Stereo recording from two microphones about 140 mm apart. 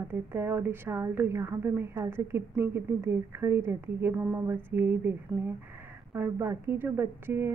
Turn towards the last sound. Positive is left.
turn(degrees=-15)  # may be behind; listen again after turning